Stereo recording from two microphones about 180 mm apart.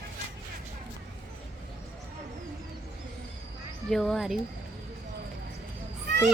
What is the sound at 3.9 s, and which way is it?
Speech, centre (ahead or behind).